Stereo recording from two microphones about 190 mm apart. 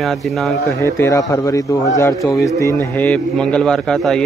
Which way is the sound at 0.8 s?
15° left (ahead or behind).